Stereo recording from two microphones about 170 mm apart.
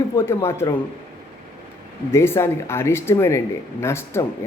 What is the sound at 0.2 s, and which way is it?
Speech, 15° left (ahead or behind).